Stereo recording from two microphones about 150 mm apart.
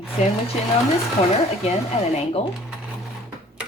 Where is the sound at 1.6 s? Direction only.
45° left (ahead or behind).